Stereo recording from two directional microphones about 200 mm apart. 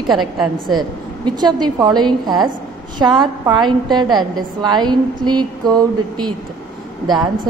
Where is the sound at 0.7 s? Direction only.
20° right (ahead or behind).